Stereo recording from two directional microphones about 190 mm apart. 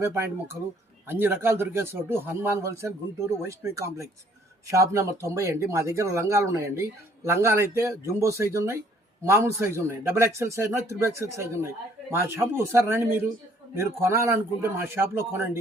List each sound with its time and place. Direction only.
0.0 s a man's voice: 10° right (ahead or behind)